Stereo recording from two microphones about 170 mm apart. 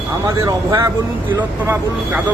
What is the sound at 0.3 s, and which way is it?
Speech, 20° right (ahead or behind).